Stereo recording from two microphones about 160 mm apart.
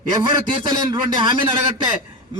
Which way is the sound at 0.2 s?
30° right (ahead or behind).